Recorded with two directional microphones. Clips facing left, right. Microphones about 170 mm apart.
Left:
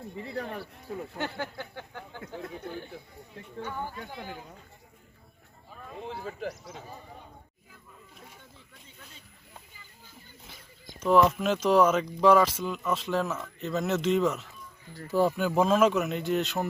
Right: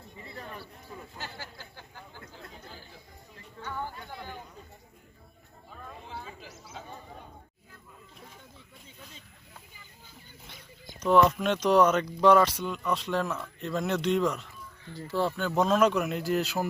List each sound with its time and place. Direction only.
0.2 s speech: 70° left (ahead or behind)
3.6 s speech: 15° left (ahead or behind)
6.5 s speech: 5° right (ahead or behind)
11.0 s speech: centre (ahead or behind)